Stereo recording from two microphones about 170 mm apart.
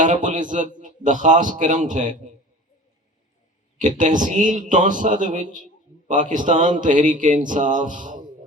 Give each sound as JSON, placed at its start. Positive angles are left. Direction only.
{"t": 0.0, "sound": "a man's voice", "side_deg": -50}
{"t": 3.8, "sound": "a man's voice", "side_deg": -50}